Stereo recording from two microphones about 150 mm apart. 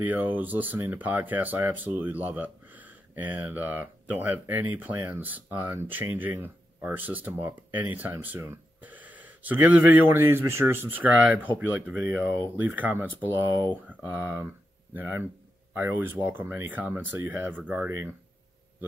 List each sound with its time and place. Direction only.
0.0 s speech: 10° right (ahead or behind)